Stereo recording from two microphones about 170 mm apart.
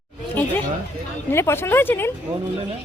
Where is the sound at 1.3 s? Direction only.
15° left (ahead or behind).